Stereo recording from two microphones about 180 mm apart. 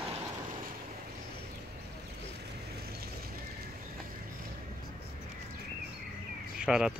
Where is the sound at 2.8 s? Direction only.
60° right (ahead or behind).